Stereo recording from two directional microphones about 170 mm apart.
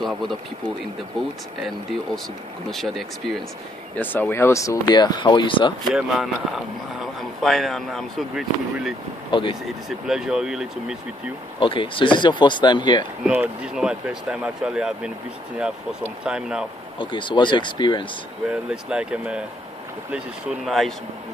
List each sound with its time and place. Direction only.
0.0 s speech: centre (ahead or behind)
2.7 s speech: centre (ahead or behind); by 5.7 s 30° left (ahead or behind)
5.9 s speech: 5° right (ahead or behind)
9.3 s speech: 30° left (ahead or behind)
9.8 s speech: 5° right (ahead or behind)
11.6 s speech: 30° left (ahead or behind)
13.2 s speech: 10° right (ahead or behind)
17.0 s speech: 30° left (ahead or behind)
18.5 s speech: 5° right (ahead or behind)
20.6 s speech: centre (ahead or behind)